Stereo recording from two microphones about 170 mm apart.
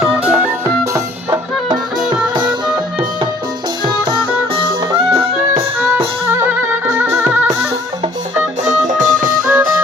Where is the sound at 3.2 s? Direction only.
30° right (ahead or behind); by 7.6 s 10° right (ahead or behind).